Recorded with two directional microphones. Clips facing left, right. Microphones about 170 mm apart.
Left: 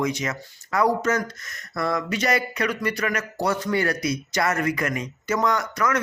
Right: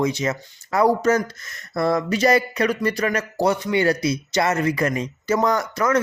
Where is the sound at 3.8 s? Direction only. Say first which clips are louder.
Right 5 dB; 30° right (ahead or behind).